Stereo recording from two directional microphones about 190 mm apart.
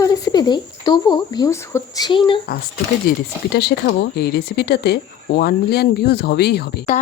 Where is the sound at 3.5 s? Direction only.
55° left (ahead or behind).